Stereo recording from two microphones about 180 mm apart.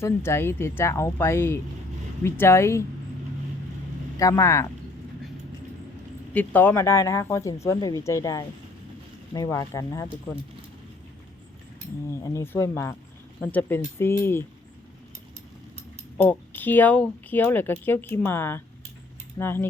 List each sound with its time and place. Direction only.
0.0 s speech: 15° left (ahead or behind)
4.2 s speech: 15° left (ahead or behind)
6.3 s speech: 10° left (ahead or behind)
12.1 s speech: 15° left (ahead or behind)
16.1 s speech: 10° left (ahead or behind)